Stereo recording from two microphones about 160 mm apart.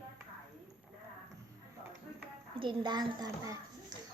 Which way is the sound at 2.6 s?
30° right (ahead or behind).